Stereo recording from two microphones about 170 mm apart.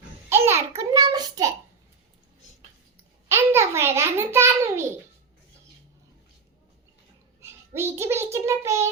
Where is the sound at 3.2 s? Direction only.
15° right (ahead or behind).